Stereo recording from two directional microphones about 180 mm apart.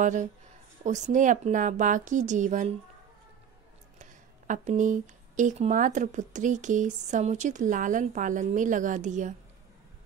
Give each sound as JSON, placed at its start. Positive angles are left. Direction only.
{"t": 0.0, "sound": "speech", "side_deg": -45}
{"t": 4.0, "sound": "speech", "side_deg": -45}